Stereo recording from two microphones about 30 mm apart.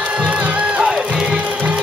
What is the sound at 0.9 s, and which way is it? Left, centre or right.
Music, right.